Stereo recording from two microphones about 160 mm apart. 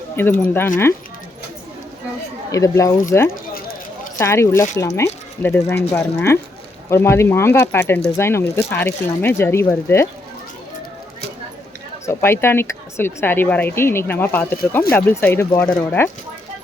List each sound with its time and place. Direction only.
0.2 s speech: 10° left (ahead or behind)
2.5 s speech: 20° left (ahead or behind)
12.0 s speech: 15° left (ahead or behind)